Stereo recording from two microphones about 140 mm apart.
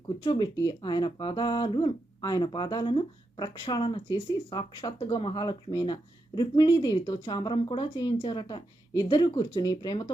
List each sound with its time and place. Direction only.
0.3 s speech: 30° left (ahead or behind)